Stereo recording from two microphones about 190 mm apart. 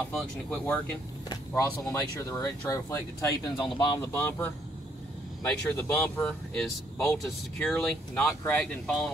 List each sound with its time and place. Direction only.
0.2 s speech: 5° left (ahead or behind); by 4.2 s 25° left (ahead or behind)
4.2 s speech: 10° left (ahead or behind)